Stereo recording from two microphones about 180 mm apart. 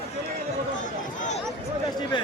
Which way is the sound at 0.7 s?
45° left (ahead or behind).